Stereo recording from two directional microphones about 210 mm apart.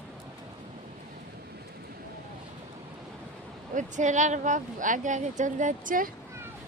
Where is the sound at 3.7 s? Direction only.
35° right (ahead or behind).